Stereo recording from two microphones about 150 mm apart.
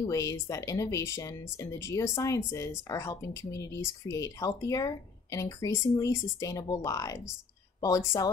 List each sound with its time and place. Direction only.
0.0 s speech: 20° left (ahead or behind)